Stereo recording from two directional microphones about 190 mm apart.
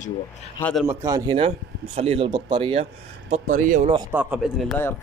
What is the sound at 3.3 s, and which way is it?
Speech, 40° right (ahead or behind).